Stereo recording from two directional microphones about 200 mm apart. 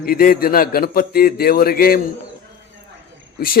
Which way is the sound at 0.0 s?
45° left (ahead or behind).